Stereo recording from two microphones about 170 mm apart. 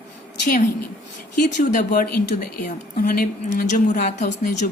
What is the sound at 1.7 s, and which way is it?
Speech, 50° left (ahead or behind).